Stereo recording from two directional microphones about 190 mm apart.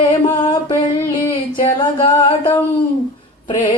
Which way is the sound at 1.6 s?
25° left (ahead or behind).